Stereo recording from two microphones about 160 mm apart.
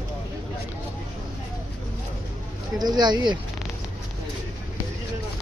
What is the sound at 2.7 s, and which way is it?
Speech, 25° right (ahead or behind).